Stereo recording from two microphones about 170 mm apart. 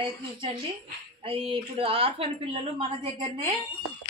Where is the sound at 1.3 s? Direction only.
30° right (ahead or behind).